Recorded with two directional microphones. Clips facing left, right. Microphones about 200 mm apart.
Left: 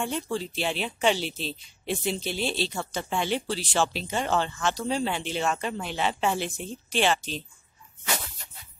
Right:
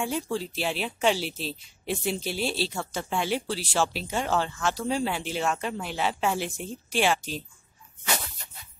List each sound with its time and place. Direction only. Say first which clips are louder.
0.0 s speech: right 1 dB; 5° right (ahead or behind)